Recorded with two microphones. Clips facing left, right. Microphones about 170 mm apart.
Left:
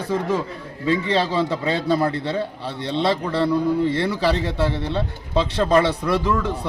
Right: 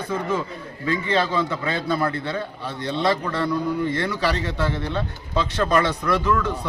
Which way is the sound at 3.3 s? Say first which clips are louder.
Left 4 dB; 30° left (ahead or behind).